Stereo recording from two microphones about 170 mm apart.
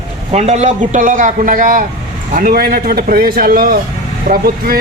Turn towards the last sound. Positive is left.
turn(degrees=-60)  # may be behind; listen again after turning